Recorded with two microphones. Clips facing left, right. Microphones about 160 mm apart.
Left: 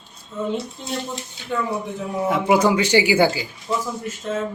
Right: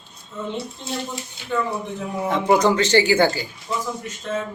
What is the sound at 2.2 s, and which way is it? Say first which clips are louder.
Speech: even; 5° left (ahead or behind).